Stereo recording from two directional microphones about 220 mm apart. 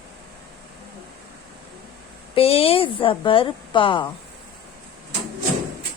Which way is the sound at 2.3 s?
25° left (ahead or behind).